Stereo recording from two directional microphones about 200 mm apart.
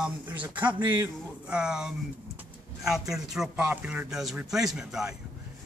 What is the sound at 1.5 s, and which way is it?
Speech, 5° right (ahead or behind).